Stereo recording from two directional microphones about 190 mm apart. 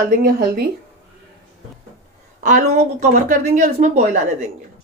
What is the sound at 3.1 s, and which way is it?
Speech, 40° right (ahead or behind).